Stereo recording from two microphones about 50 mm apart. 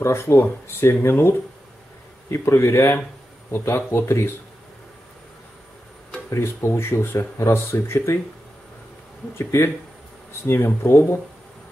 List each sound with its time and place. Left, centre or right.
0.0 s speech: left
2.3 s speech: left
6.3 s speech: left
9.4 s speech: left
10.4 s speech: left